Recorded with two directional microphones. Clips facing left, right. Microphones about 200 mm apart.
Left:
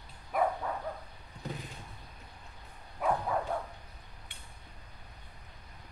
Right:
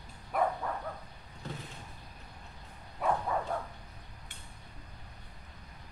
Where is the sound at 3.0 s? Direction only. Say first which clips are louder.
Even; 5° left (ahead or behind).